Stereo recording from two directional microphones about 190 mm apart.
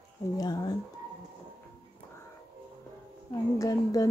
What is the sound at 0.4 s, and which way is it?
Speech, 20° left (ahead or behind).